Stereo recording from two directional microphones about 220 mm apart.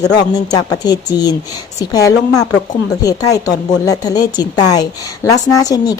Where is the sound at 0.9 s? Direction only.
20° left (ahead or behind).